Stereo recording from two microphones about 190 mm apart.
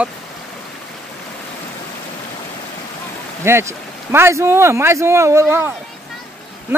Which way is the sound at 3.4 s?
15° right (ahead or behind).